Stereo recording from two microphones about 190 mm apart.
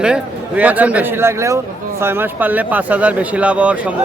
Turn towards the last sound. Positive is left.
turn(degrees=-5)  # may be behind; listen again after turning